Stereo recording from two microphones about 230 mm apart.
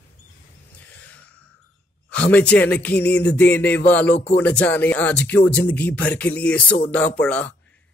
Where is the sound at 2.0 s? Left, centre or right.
Centre.